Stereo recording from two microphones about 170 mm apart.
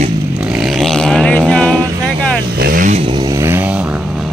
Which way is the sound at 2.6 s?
55° right (ahead or behind).